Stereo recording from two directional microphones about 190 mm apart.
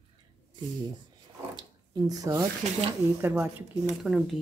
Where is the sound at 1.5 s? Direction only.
20° right (ahead or behind).